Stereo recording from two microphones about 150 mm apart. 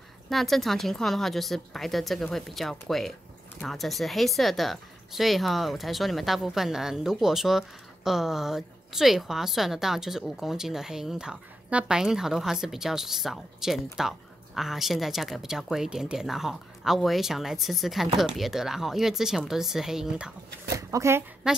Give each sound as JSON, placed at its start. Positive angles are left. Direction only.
{"t": 0.3, "sound": "a woman's voice", "side_deg": 0}
{"t": 20.7, "sound": "speech", "side_deg": -20}
{"t": 21.4, "sound": "a woman's voice", "side_deg": -5}